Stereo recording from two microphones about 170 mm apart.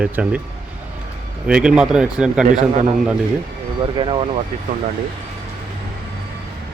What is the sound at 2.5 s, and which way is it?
Speech, 45° right (ahead or behind).